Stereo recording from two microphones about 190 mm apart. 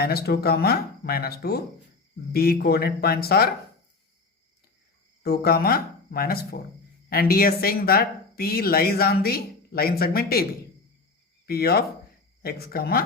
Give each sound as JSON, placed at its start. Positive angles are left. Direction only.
{"t": 0.0, "sound": "speech", "side_deg": 55}
{"t": 5.2, "sound": "speech", "side_deg": 55}
{"t": 11.4, "sound": "speech", "side_deg": 55}